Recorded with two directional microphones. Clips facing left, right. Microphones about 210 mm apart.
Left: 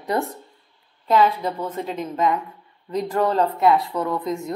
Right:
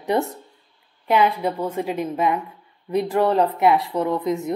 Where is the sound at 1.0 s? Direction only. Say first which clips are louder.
Even; 15° right (ahead or behind).